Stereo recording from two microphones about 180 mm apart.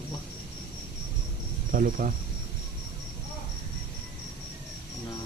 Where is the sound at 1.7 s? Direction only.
50° right (ahead or behind).